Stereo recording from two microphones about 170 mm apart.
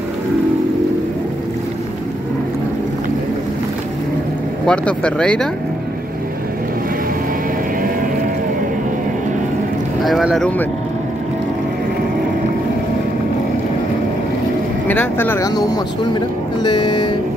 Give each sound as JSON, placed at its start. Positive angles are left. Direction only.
{"t": 4.6, "sound": "speech", "side_deg": 5}
{"t": 10.0, "sound": "speech", "side_deg": 0}
{"t": 14.9, "sound": "speech", "side_deg": 10}